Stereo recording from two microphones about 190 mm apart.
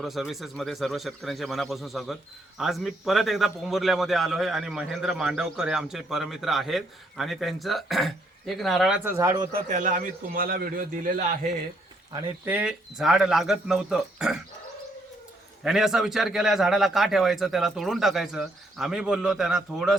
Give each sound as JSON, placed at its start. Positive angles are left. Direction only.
{"t": 0.0, "sound": "a man's voice", "side_deg": 0}
{"t": 9.0, "sound": "a man's voice", "side_deg": -15}
{"t": 9.5, "sound": "a man's voice", "side_deg": -45}
{"t": 12.5, "sound": "a man's voice", "side_deg": -5}
{"t": 15.6, "sound": "a man's voice", "side_deg": 0}